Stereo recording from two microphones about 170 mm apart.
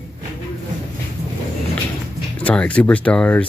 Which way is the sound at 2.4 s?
5° left (ahead or behind).